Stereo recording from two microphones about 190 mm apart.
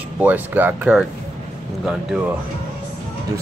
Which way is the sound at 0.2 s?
10° right (ahead or behind).